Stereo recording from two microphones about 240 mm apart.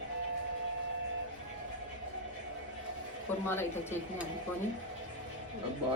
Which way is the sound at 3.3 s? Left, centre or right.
Centre.